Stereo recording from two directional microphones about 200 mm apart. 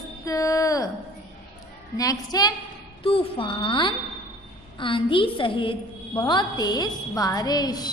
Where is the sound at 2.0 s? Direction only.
20° left (ahead or behind).